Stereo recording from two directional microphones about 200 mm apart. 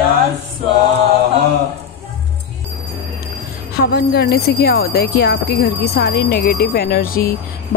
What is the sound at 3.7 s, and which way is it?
Speech, 55° left (ahead or behind).